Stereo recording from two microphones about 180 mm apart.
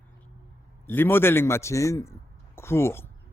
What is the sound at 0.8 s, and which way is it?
A man's voice, 10° left (ahead or behind).